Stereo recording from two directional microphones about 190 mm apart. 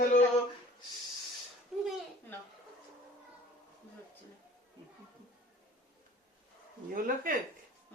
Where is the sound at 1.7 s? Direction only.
Centre (ahead or behind).